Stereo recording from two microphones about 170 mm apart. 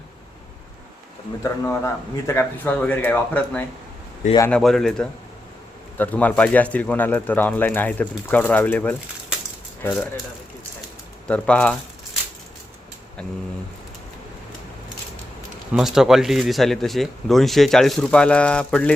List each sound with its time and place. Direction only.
1.5 s speech: 15° left (ahead or behind)
11.3 s speech: 5° left (ahead or behind)
15.7 s speech: centre (ahead or behind)